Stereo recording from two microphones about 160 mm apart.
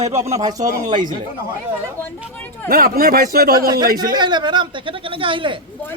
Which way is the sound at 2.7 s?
65° right (ahead or behind).